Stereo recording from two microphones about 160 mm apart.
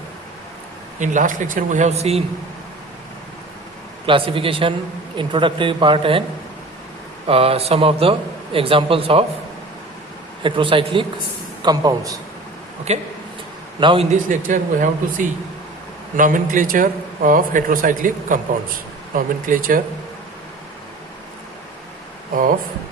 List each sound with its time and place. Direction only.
0.9 s speech: 50° right (ahead or behind)
4.0 s speech: 35° right (ahead or behind)
7.3 s speech: 35° right (ahead or behind)
10.4 s a man's voice: 30° right (ahead or behind)
12.9 s speech: 45° right (ahead or behind)
13.7 s speech: 30° right (ahead or behind)
14.1 s a man's voice: 55° right (ahead or behind)
22.3 s a man's voice: 60° right (ahead or behind)